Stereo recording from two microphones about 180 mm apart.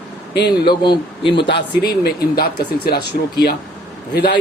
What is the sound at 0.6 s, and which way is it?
Speech, 25° left (ahead or behind).